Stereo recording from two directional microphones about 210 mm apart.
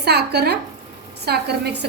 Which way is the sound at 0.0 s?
50° right (ahead or behind).